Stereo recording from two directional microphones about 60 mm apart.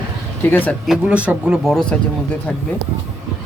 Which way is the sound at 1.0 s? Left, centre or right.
Right.